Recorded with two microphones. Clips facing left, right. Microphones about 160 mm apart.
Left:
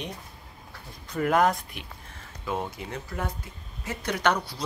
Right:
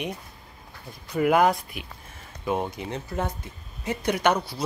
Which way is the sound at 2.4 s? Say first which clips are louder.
Right 4 dB; 20° right (ahead or behind).